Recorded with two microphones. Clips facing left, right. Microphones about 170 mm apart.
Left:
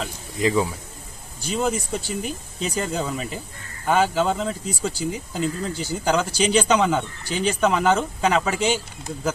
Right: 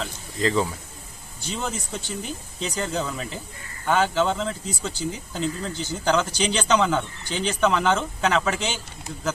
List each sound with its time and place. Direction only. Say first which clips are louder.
0.0 s speech: left 2 dB; 10° left (ahead or behind)